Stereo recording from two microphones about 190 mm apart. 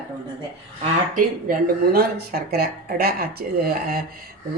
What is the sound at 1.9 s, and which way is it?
Speech, 55° right (ahead or behind).